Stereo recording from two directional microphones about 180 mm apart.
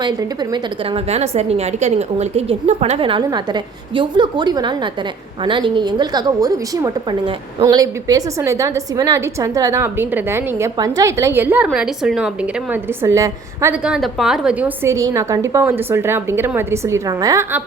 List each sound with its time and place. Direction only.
0.0 s a woman's voice: 25° right (ahead or behind)
13.8 s a woman's voice: centre (ahead or behind)
14.8 s a woman's voice: 15° right (ahead or behind)